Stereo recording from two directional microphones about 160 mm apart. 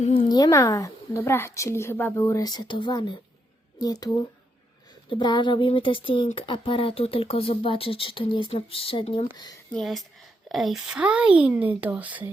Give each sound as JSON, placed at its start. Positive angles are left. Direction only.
{"t": 0.0, "sound": "speech", "side_deg": 40}
{"t": 0.3, "sound": "a woman's voice", "side_deg": 25}
{"t": 9.7, "sound": "speech", "side_deg": 0}